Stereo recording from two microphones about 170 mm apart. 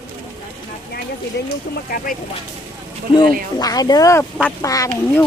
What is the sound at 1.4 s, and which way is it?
Speech, 80° left.